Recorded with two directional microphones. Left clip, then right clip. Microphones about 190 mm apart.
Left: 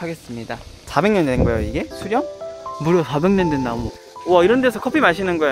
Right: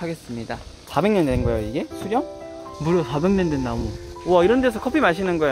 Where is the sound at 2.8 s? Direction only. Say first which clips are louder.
Left 3 dB; 15° left (ahead or behind).